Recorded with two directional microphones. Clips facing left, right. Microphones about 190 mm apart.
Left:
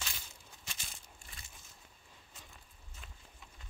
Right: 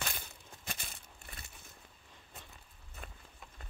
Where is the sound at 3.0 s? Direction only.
60° right (ahead or behind).